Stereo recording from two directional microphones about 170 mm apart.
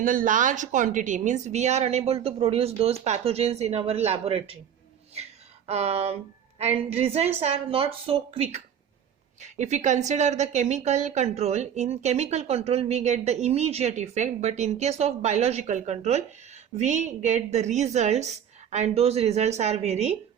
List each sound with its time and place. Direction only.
0.0 s a woman's voice: 50° right (ahead or behind); by 4.5 s 35° right (ahead or behind)
5.6 s a woman's voice: 40° right (ahead or behind)